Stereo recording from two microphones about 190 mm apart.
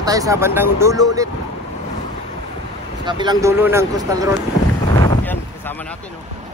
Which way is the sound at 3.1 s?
25° right (ahead or behind).